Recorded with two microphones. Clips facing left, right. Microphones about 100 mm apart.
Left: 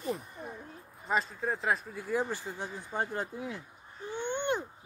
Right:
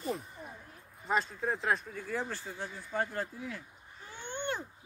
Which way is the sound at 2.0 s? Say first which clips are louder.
Left 5 dB; 15° left (ahead or behind).